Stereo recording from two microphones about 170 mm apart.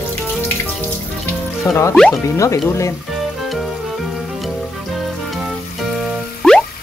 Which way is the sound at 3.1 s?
Centre (ahead or behind).